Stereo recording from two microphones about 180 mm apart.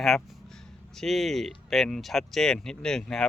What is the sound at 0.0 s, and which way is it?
Speech, centre (ahead or behind).